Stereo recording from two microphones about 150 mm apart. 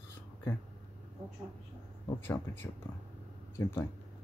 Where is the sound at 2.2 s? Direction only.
15° left (ahead or behind).